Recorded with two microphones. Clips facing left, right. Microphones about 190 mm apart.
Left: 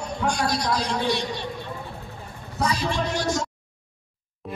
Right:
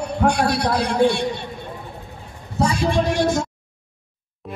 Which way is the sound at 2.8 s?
55° right (ahead or behind).